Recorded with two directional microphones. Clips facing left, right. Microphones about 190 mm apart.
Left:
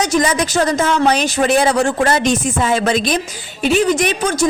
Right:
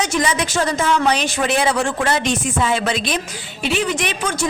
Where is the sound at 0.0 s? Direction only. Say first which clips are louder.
Left 4 dB; 40° left (ahead or behind).